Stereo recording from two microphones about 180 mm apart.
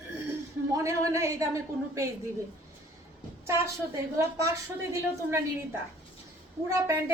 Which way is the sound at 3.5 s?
15° right (ahead or behind).